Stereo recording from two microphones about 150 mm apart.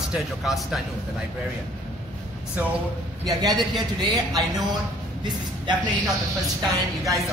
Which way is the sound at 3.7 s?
30° right (ahead or behind).